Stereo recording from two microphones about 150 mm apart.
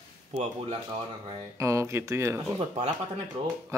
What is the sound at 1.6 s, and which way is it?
Speech, 20° right (ahead or behind).